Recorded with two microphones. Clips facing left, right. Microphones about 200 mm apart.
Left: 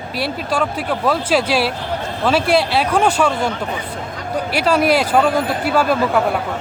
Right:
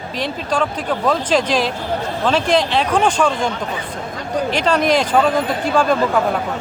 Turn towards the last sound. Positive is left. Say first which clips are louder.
# even
turn(degrees=10)  # may be behind; listen again after turning